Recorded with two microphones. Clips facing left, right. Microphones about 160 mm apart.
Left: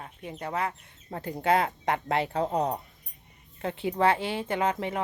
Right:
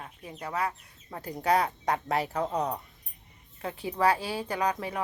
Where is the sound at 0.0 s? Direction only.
30° left (ahead or behind).